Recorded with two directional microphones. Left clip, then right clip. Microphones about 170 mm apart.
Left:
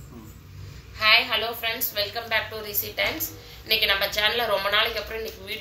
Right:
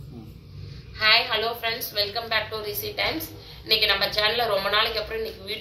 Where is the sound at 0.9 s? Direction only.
20° left (ahead or behind).